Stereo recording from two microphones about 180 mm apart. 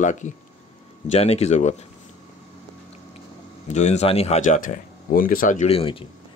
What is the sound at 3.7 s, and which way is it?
Speech, 40° left (ahead or behind).